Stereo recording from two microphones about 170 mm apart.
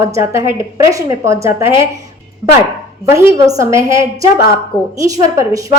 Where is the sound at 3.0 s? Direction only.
20° right (ahead or behind).